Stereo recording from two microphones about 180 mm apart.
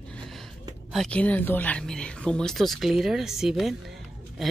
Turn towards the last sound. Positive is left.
turn(degrees=0)  # may be behind; listen again after turning